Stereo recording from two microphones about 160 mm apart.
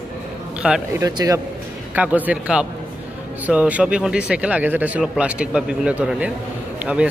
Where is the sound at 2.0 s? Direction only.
10° right (ahead or behind).